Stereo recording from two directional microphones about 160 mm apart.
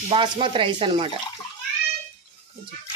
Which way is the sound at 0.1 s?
35° right (ahead or behind).